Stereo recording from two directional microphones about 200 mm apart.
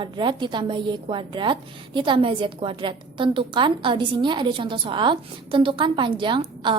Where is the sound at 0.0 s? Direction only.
25° right (ahead or behind).